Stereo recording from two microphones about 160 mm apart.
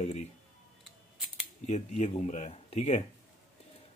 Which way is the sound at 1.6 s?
45° left (ahead or behind).